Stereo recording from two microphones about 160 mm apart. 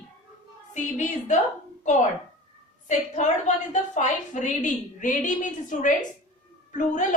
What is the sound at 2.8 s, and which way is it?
A woman's voice, 50° left (ahead or behind).